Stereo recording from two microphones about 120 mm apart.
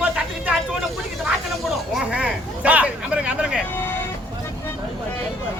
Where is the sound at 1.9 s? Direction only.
10° right (ahead or behind).